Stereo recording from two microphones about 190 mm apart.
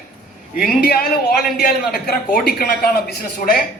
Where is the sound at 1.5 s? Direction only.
55° left (ahead or behind).